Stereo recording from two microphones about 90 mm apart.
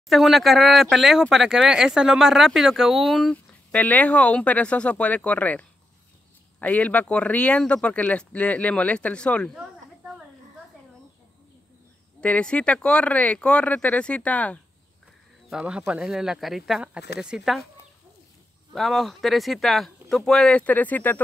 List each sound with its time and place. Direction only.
0.1 s speech: centre (ahead or behind)
3.7 s speech: 15° left (ahead or behind)
12.2 s speech: 10° left (ahead or behind)
15.5 s speech: 10° right (ahead or behind)
18.8 s speech: centre (ahead or behind); by 21.2 s 20° left (ahead or behind)